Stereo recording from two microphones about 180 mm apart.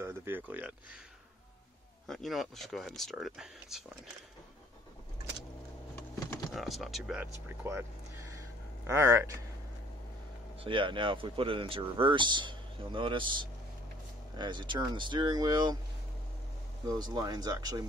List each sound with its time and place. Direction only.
0.0 s speech: 15° right (ahead or behind)
2.0 s speech: centre (ahead or behind)
6.1 s typing: 20° left (ahead or behind)
6.5 s speech: centre (ahead or behind)
10.6 s speech: 30° right (ahead or behind)
14.4 s speech: 25° right (ahead or behind)
17.0 s speech: 25° right (ahead or behind)